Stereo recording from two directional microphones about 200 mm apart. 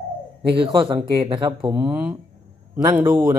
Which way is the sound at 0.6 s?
20° right (ahead or behind).